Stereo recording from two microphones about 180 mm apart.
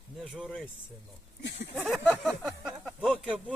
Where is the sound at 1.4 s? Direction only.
75° left (ahead or behind).